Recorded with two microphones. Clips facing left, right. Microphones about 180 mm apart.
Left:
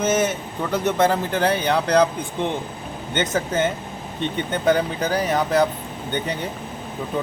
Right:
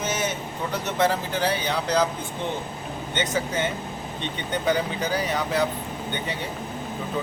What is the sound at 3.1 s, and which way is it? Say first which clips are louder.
Speech: left 4 dB; 50° left (ahead or behind).